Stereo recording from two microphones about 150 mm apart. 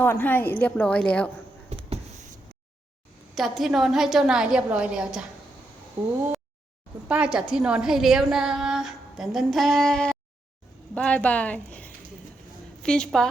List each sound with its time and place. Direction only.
0.0 s a woman's voice: 15° left (ahead or behind)
3.3 s a woman's voice: centre (ahead or behind)
7.1 s a woman's voice: 5° right (ahead or behind)